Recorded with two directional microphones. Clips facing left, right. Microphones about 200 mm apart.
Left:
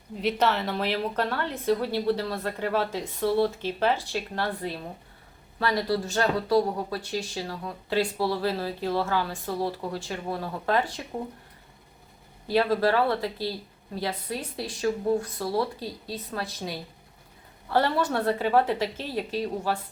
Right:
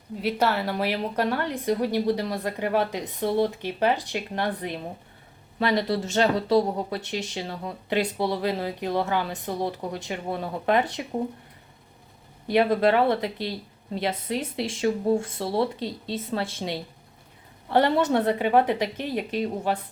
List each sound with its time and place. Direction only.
0.2 s a woman's voice: 5° right (ahead or behind)
12.5 s speech: 20° right (ahead or behind)